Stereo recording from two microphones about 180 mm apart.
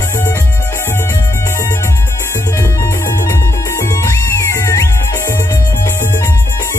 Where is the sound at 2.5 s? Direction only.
15° left (ahead or behind).